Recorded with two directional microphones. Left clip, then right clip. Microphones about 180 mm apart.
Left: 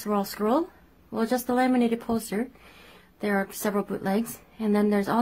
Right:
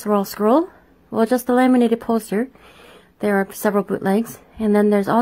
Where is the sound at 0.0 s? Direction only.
35° right (ahead or behind).